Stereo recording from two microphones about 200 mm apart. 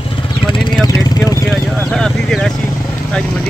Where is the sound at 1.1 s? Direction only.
20° left (ahead or behind).